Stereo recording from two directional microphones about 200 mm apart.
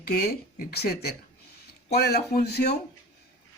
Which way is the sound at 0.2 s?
50° left (ahead or behind).